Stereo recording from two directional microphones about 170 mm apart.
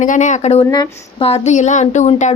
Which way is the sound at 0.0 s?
45° left (ahead or behind).